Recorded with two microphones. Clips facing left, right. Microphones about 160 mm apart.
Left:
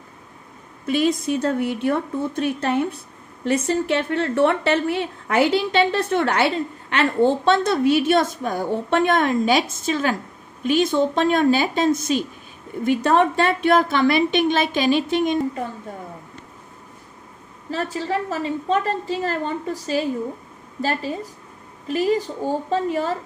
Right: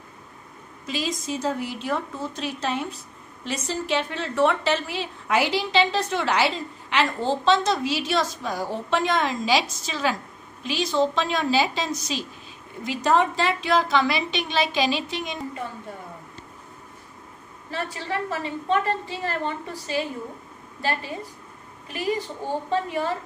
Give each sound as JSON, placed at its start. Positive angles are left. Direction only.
{"t": 0.8, "sound": "a woman's voice", "side_deg": 60}
{"t": 17.6, "sound": "a woman's voice", "side_deg": 40}